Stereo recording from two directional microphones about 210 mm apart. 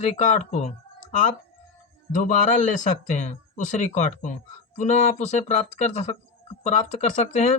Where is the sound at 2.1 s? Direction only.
40° left (ahead or behind).